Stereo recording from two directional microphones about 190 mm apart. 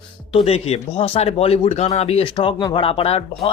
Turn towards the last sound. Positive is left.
turn(degrees=30)  # may be behind; listen again after turning